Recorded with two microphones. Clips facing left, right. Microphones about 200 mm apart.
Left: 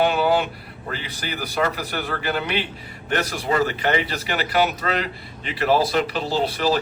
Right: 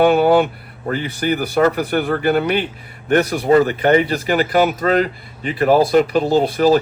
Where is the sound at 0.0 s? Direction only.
55° right (ahead or behind).